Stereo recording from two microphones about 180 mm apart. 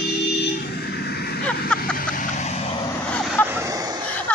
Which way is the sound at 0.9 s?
60° left (ahead or behind).